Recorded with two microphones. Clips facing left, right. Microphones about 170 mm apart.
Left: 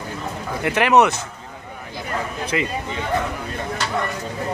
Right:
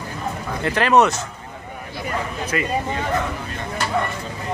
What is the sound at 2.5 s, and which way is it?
Speech, 20° left (ahead or behind).